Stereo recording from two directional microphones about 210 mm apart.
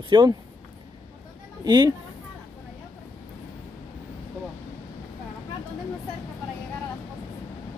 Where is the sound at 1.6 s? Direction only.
20° right (ahead or behind).